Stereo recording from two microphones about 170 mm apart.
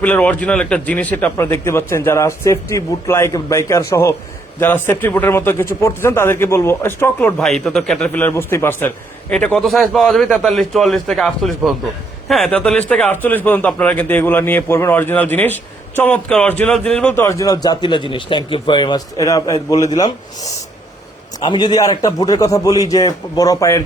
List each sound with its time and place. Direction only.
0.0 s a man's voice: 10° left (ahead or behind)
21.4 s a man's voice: 25° left (ahead or behind)